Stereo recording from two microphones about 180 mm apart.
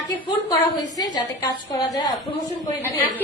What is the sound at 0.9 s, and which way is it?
A woman's voice, 20° left (ahead or behind).